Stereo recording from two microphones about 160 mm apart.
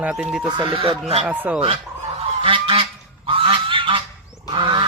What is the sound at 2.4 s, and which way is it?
Goose, 35° right (ahead or behind).